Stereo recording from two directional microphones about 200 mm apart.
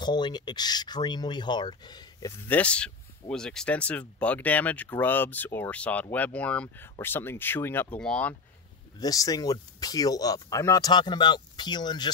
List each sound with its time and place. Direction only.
0.0 s speech: 20° left (ahead or behind); by 8.4 s 5° left (ahead or behind)
9.0 s speech: 20° left (ahead or behind)